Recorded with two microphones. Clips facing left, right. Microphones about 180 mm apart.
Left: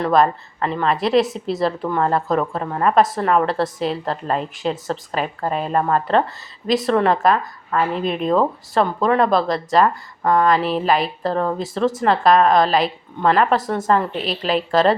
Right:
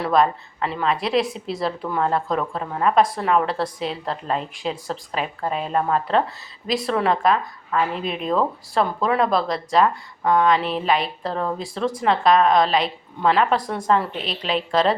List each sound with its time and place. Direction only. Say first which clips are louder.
0.0 s a woman's voice: left 2 dB; centre (ahead or behind)